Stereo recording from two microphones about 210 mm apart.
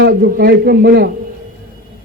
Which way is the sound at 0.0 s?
50° right (ahead or behind).